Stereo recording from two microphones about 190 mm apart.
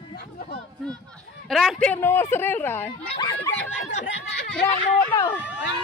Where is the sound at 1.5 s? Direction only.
Centre (ahead or behind).